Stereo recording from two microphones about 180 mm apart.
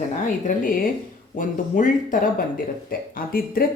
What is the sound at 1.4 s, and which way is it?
Speech, 50° left (ahead or behind).